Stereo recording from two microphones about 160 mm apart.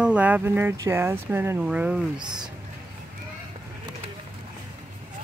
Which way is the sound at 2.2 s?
25° right (ahead or behind).